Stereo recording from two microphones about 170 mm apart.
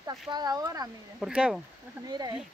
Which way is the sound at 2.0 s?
25° right (ahead or behind).